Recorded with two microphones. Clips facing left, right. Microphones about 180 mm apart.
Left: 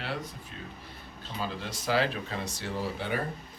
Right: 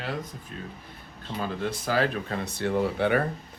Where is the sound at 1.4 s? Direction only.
50° right (ahead or behind).